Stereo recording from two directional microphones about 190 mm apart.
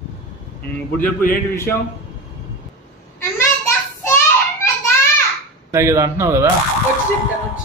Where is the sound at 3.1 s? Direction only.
15° left (ahead or behind).